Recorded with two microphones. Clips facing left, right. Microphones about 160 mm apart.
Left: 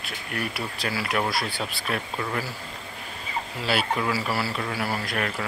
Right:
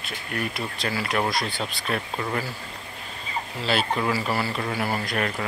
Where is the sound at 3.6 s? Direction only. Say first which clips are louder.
Right 1 dB; 10° left (ahead or behind).